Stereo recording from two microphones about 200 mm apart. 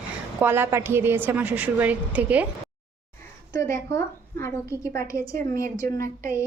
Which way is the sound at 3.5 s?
15° left (ahead or behind).